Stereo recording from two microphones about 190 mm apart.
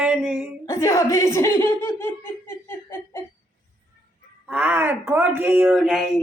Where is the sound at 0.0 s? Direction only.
10° right (ahead or behind).